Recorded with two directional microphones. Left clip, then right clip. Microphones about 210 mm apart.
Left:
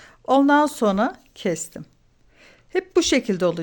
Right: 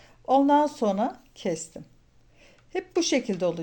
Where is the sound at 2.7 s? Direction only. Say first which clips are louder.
Left 6 dB; 35° left (ahead or behind).